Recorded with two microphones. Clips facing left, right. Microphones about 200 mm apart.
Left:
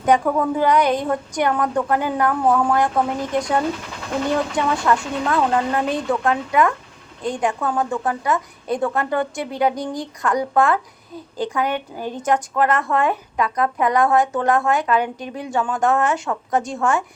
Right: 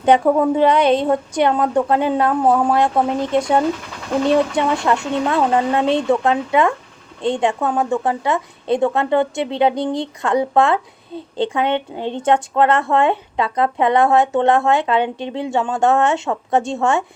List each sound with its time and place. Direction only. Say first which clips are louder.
0.0 s a woman's voice: right 4 dB; 25° right (ahead or behind)